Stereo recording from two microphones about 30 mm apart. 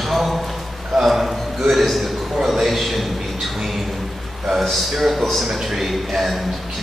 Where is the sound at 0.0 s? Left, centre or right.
Centre.